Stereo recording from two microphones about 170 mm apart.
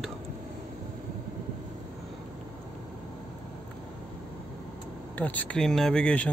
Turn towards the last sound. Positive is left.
turn(degrees=5)  # may be behind; listen again after turning